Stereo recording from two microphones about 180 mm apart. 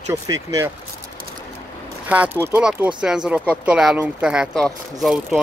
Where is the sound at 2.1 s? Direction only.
10° right (ahead or behind).